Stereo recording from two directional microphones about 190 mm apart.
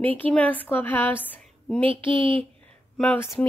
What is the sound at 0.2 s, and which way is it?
A woman's voice, 10° left (ahead or behind).